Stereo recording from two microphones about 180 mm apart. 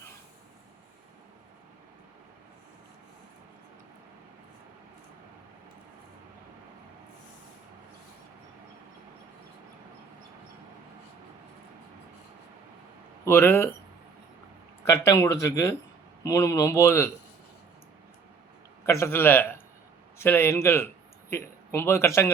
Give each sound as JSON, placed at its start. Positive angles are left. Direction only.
{"t": 13.2, "sound": "speech", "side_deg": 15}
{"t": 14.8, "sound": "speech", "side_deg": 15}
{"t": 18.9, "sound": "speech", "side_deg": 15}